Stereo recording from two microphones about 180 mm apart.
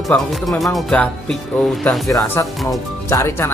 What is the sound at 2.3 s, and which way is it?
Speech, 15° left (ahead or behind).